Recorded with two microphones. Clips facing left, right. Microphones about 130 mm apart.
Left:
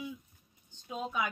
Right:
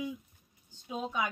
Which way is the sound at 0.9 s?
5° left (ahead or behind).